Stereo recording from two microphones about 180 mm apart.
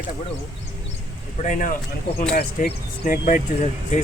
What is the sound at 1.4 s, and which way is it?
Speech, 45° left (ahead or behind).